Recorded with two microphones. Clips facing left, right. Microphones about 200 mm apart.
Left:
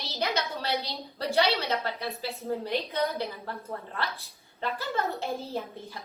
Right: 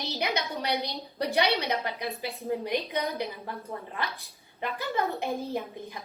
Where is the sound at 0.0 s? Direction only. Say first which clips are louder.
Even; 15° right (ahead or behind).